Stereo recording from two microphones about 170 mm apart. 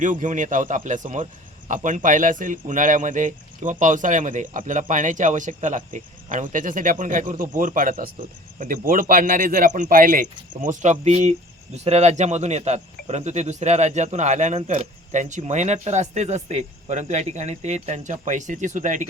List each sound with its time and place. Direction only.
0.0 s speech: 50° right (ahead or behind)